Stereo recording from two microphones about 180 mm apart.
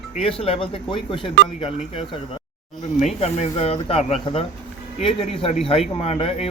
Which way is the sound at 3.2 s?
35° left (ahead or behind).